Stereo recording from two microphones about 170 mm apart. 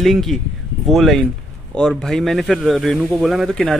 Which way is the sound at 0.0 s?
Centre (ahead or behind).